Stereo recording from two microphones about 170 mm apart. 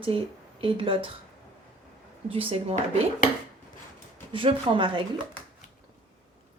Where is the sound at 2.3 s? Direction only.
30° right (ahead or behind).